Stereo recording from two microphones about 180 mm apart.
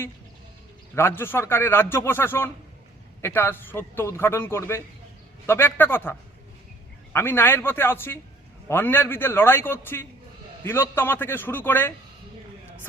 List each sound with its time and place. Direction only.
0.9 s a man's voice: 15° left (ahead or behind)